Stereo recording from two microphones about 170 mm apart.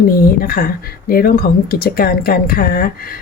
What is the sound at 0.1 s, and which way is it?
Speech, 60° left (ahead or behind).